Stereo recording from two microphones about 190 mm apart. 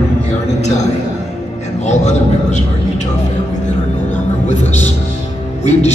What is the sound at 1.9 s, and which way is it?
Music, 35° left (ahead or behind).